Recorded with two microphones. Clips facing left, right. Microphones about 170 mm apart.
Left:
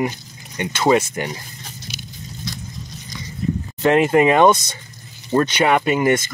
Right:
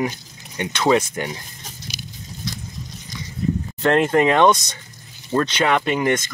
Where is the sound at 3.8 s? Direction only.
10° left (ahead or behind).